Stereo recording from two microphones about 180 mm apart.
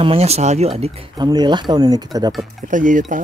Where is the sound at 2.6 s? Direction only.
45° right (ahead or behind).